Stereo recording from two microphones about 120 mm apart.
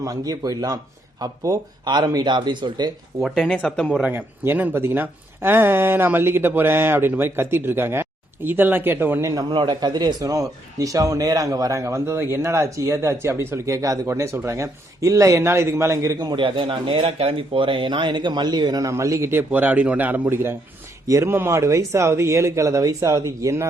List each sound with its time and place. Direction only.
0.0 s a man's voice: 30° right (ahead or behind)
3.2 s speech: centre (ahead or behind)
4.0 s a man's voice: 15° right (ahead or behind)
9.3 s a man's voice: 35° right (ahead or behind)